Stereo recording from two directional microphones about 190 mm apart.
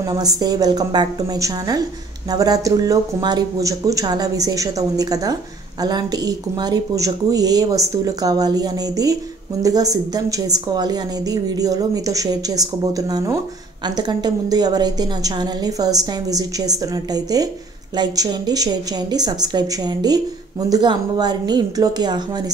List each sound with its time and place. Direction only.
0.0 s speech: 20° right (ahead or behind)